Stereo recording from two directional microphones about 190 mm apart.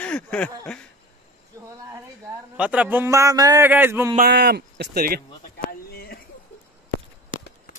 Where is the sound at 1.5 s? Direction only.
15° right (ahead or behind).